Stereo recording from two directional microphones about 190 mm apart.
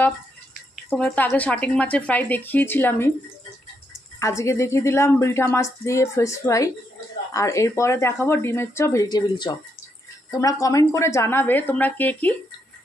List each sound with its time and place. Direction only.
0.8 s speech: 5° left (ahead or behind)
4.2 s speech: 15° left (ahead or behind)